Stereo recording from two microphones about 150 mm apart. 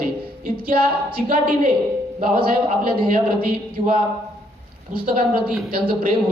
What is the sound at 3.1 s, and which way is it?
Speech, 65° right (ahead or behind).